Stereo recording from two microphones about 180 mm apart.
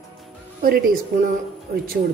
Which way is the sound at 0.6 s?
55° right (ahead or behind).